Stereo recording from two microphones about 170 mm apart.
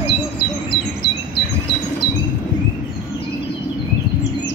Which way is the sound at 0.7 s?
25° left (ahead or behind).